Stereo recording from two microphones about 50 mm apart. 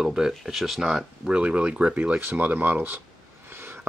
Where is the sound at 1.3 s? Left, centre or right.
Right.